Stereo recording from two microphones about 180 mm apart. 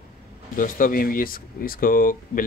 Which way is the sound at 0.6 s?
50° left (ahead or behind).